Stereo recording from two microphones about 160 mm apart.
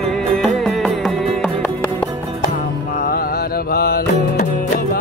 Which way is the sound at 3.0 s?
70° left (ahead or behind).